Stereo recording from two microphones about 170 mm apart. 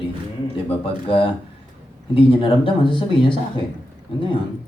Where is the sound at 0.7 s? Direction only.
35° left (ahead or behind).